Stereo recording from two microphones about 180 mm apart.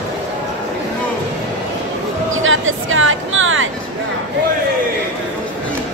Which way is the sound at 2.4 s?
90° right.